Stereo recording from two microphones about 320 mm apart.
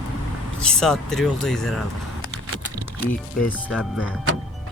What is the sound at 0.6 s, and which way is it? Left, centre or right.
Speech, centre.